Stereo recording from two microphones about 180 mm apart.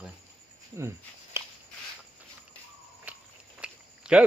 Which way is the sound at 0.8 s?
15° right (ahead or behind).